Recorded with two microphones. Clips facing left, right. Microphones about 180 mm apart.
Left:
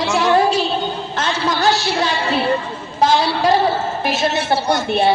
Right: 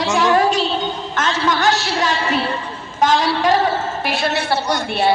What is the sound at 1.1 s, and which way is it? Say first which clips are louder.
A woman's voice: right 2 dB; 35° left (ahead or behind).